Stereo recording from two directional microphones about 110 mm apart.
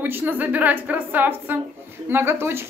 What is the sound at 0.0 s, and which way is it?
A woman's voice, 20° right (ahead or behind).